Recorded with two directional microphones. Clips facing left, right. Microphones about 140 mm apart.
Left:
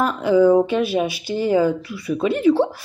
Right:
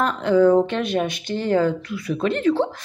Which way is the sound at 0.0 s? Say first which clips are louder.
Left 1 dB; 5° left (ahead or behind).